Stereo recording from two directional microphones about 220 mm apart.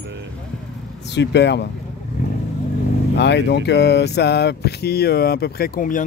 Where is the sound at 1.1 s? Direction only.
50° left (ahead or behind).